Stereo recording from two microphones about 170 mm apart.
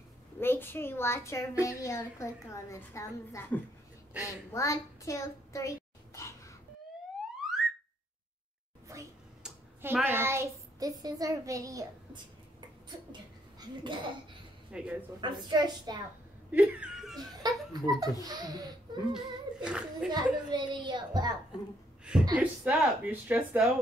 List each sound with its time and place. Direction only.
0.4 s a woman's voice: 15° left (ahead or behind)
4.5 s a sound: 20° left (ahead or behind)
7.4 s a sound: centre (ahead or behind)
9.4 s a sound: 15° right (ahead or behind)
9.9 s a child's voice: 10° right (ahead or behind)
13.1 s a sound: 30° right (ahead or behind)
14.7 s speech: 5° right (ahead or behind)
15.1 s a woman's voice: 25° right (ahead or behind)
16.5 s speech: 5° right (ahead or behind)
17.2 s a woman's voice: 20° right (ahead or behind)
19.1 s speech: 5° right (ahead or behind)
20.1 s a woman's voice: 25° right (ahead or behind)
22.3 s speech: 10° right (ahead or behind)